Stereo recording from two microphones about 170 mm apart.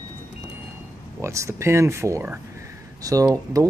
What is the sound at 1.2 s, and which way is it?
Speech, 15° right (ahead or behind).